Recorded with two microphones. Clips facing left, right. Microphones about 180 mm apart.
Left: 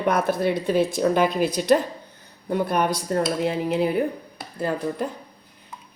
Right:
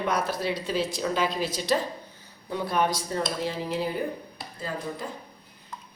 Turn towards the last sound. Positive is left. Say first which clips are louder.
# left 8 dB
turn(degrees=60)  # may be behind; listen again after turning